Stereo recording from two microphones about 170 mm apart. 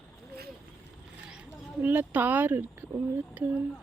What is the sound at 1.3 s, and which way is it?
Speech, 5° right (ahead or behind).